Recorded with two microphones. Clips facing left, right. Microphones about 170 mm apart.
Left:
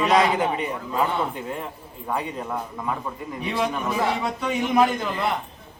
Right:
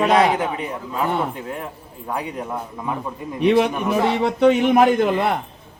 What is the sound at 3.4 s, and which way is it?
A man's voice, 70° right (ahead or behind).